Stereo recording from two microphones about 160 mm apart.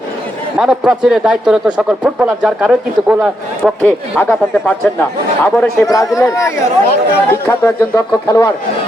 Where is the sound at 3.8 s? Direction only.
10° left (ahead or behind).